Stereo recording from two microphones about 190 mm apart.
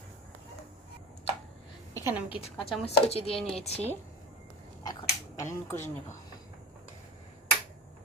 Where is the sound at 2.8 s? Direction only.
30° left (ahead or behind).